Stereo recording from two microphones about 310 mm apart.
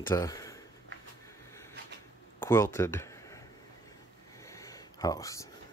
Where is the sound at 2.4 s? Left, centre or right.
Centre.